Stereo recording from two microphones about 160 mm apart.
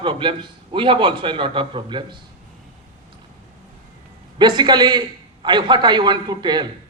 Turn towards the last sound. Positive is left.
turn(degrees=-25)  # may be behind; listen again after turning